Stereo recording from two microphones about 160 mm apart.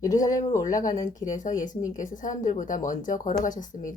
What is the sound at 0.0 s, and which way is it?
Speech, 20° left (ahead or behind).